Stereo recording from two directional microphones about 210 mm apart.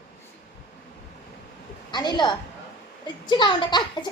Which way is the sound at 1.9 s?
20° left (ahead or behind).